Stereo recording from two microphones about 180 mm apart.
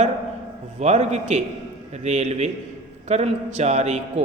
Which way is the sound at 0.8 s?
40° right (ahead or behind).